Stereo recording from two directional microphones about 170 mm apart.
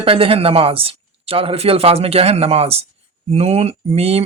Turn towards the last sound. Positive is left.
turn(degrees=-35)  # may be behind; listen again after turning